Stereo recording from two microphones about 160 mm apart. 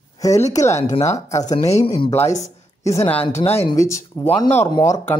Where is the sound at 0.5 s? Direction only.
20° left (ahead or behind).